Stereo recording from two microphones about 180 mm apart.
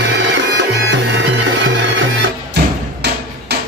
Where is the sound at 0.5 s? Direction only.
80° right.